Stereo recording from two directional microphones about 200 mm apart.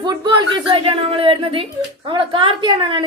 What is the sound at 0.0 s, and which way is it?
A woman's voice, 20° right (ahead or behind).